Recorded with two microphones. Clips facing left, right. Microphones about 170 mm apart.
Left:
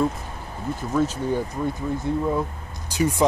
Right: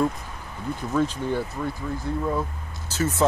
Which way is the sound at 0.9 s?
10° left (ahead or behind).